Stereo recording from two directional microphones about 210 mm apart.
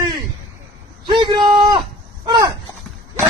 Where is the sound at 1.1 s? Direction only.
20° right (ahead or behind).